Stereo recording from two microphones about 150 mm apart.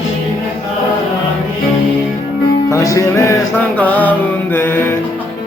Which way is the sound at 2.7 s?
20° left (ahead or behind).